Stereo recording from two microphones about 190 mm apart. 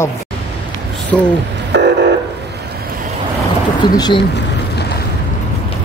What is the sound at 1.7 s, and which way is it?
Vehicle, 65° right (ahead or behind).